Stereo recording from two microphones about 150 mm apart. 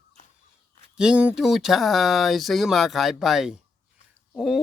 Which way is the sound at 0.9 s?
5° right (ahead or behind).